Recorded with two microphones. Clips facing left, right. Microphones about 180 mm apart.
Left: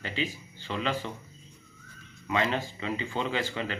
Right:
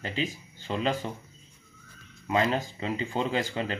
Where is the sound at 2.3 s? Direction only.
40° right (ahead or behind).